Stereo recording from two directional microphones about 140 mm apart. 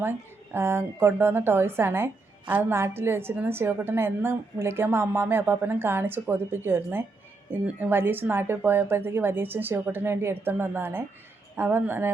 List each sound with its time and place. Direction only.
0.5 s a woman's voice: 15° right (ahead or behind)